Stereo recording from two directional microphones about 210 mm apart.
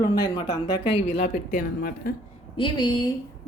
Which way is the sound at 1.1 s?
35° left (ahead or behind).